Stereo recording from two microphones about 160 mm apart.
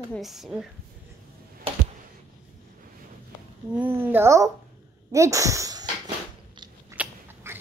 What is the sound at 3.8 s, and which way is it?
A woman's voice, 10° right (ahead or behind).